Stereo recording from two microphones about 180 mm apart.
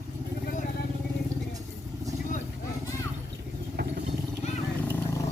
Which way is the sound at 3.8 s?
60° right (ahead or behind).